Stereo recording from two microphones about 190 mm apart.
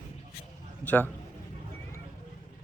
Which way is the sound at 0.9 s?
10° left (ahead or behind).